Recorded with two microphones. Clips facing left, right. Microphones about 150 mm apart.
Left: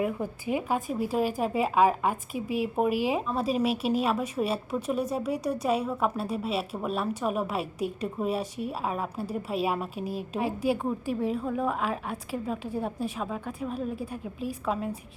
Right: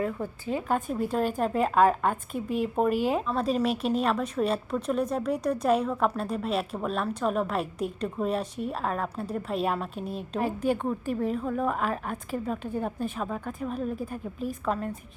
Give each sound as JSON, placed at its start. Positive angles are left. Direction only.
{"t": 0.0, "sound": "a woman's voice", "side_deg": 15}